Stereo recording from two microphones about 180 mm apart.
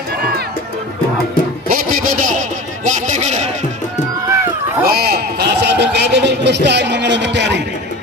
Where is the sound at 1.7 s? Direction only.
50° right (ahead or behind).